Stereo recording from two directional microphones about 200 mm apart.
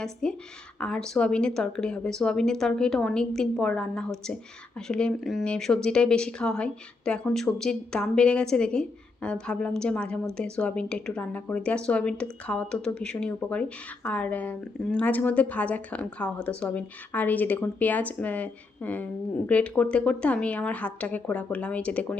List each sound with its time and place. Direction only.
0.0 s speech: 5° left (ahead or behind)